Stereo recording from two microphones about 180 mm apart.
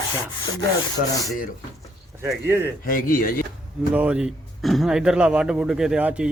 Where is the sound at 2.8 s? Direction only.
50° left (ahead or behind).